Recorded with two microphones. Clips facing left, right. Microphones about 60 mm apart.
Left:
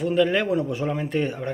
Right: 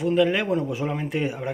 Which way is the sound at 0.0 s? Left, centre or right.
Centre.